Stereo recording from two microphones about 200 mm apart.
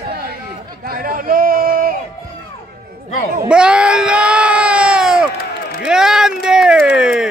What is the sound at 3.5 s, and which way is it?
Screaming, 5° right (ahead or behind).